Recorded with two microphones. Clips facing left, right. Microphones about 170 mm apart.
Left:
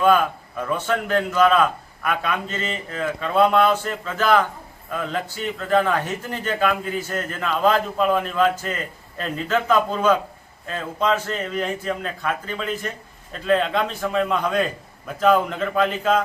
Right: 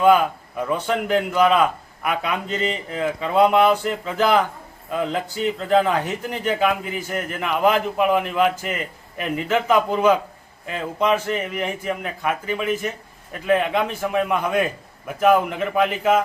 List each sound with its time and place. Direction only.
0.0 s a man's voice: 15° right (ahead or behind)